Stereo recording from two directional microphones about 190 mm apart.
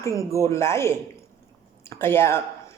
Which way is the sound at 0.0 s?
15° left (ahead or behind).